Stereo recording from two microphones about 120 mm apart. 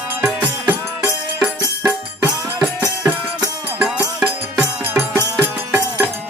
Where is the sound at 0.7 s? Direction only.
15° right (ahead or behind).